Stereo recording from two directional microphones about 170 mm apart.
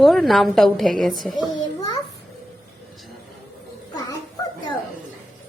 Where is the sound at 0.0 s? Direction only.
Centre (ahead or behind).